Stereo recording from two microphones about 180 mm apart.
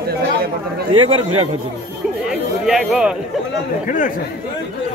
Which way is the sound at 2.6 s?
Centre (ahead or behind).